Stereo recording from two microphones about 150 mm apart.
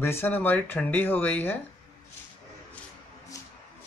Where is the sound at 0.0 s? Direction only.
15° left (ahead or behind).